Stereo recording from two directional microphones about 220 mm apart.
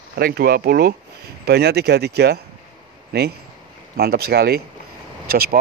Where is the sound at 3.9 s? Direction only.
45° right (ahead or behind).